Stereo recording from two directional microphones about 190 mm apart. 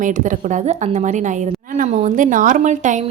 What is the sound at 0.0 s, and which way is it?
A woman's voice, 40° right (ahead or behind).